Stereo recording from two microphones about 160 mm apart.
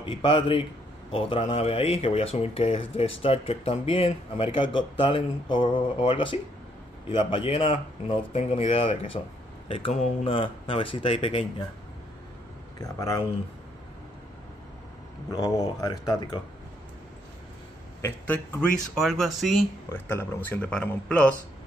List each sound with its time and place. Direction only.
0.0 s speech: 30° left (ahead or behind)
9.9 s speech: 45° left (ahead or behind)
10.3 s speech: 35° left (ahead or behind)
12.8 s speech: 20° left (ahead or behind)
15.3 s speech: 20° left (ahead or behind)
18.0 s speech: 15° left (ahead or behind)
18.9 s speech: centre (ahead or behind)
19.9 s speech: 15° left (ahead or behind)